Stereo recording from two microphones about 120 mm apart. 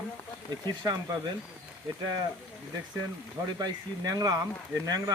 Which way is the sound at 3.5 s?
35° right (ahead or behind).